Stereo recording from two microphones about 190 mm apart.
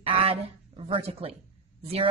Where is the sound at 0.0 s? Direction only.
30° right (ahead or behind).